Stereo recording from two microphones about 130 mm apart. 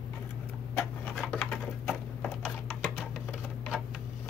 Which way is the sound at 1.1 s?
Centre (ahead or behind).